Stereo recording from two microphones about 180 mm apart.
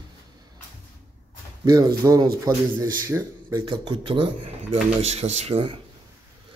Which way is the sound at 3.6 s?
25° right (ahead or behind).